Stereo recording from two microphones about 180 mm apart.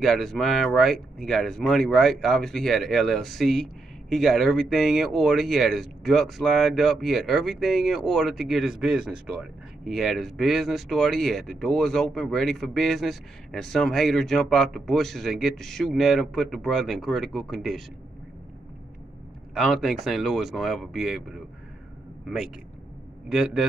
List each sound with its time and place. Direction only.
0.0 s speech: centre (ahead or behind)
19.5 s speech: centre (ahead or behind)
23.2 s speech: 5° right (ahead or behind)